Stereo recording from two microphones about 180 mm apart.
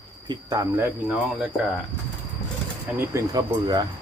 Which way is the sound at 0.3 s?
20° right (ahead or behind).